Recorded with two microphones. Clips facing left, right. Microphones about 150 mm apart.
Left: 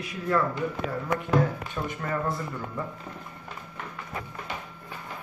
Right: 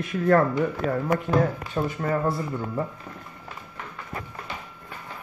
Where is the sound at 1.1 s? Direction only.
35° right (ahead or behind).